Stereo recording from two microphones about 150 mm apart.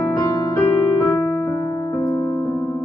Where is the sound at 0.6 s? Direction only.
20° left (ahead or behind).